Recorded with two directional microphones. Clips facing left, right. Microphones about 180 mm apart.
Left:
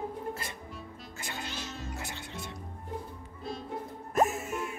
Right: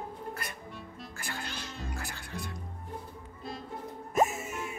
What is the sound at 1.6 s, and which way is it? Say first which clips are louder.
Cat: left 1 dB; centre (ahead or behind).